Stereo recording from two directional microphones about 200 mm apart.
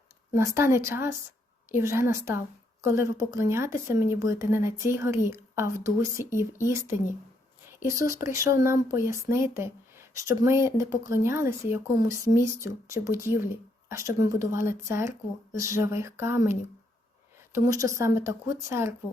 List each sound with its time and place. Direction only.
0.3 s a woman's voice: 15° right (ahead or behind)